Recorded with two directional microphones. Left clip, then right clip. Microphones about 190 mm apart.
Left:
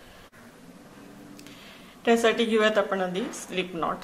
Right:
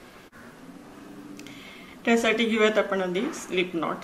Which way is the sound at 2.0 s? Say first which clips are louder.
Left 1 dB; 40° left (ahead or behind).